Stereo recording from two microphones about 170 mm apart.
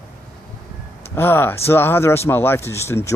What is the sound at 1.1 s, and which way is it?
Speech, 15° left (ahead or behind).